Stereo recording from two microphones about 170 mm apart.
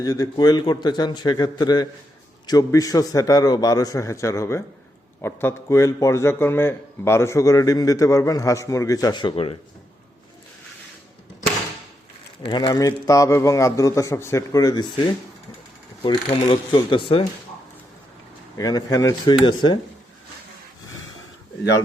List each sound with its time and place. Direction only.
0.0 s a man's voice: 20° left (ahead or behind)
12.5 s a man's voice: 25° left (ahead or behind)
16.7 s speech: 30° left (ahead or behind)
18.5 s a man's voice: 20° left (ahead or behind)